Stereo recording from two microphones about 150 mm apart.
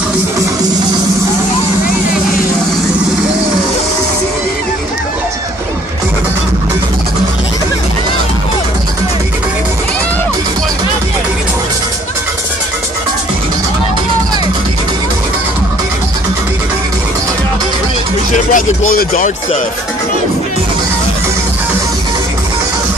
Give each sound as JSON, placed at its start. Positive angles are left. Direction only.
{"t": 18.3, "sound": "speech", "side_deg": 60}